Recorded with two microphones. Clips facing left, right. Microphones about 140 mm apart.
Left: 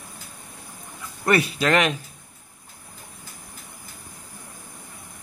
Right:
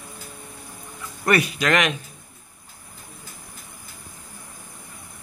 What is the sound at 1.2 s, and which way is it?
Speech, 25° left (ahead or behind).